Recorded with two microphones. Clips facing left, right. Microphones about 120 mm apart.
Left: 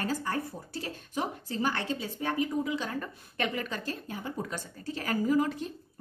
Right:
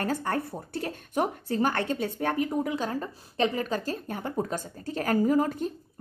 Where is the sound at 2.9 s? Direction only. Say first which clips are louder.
Right 4 dB; 30° right (ahead or behind).